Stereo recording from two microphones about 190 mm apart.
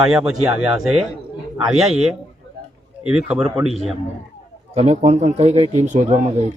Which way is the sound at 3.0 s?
5° right (ahead or behind).